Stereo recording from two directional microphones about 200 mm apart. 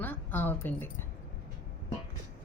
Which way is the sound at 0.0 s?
10° left (ahead or behind).